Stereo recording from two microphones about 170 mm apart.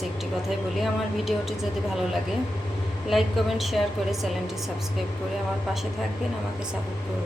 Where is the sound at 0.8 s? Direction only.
Centre (ahead or behind).